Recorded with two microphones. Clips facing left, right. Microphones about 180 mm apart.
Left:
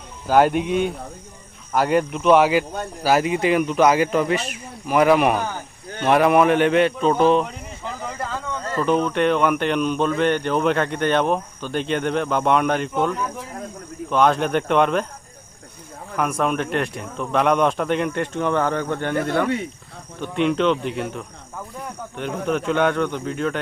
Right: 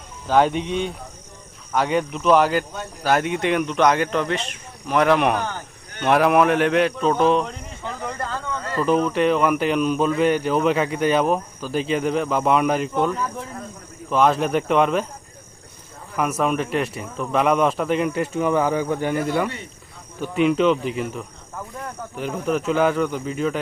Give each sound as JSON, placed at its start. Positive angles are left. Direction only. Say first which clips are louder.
{"t": 0.3, "sound": "speech", "louder": "left 2 dB", "side_deg": 5}
{"t": 16.1, "sound": "speech", "louder": "even", "side_deg": 0}